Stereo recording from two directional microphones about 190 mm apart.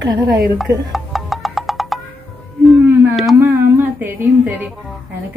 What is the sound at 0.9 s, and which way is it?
Music, centre (ahead or behind).